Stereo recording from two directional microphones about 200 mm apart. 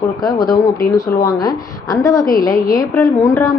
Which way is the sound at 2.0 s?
15° left (ahead or behind).